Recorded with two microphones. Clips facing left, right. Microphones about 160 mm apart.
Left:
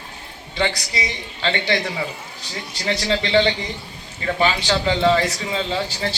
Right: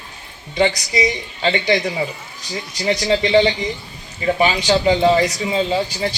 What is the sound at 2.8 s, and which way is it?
A man's voice, 15° right (ahead or behind).